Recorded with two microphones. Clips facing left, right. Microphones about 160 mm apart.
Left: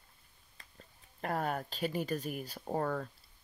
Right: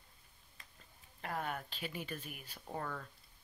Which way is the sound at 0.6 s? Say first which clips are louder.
Left 1 dB; 35° left (ahead or behind).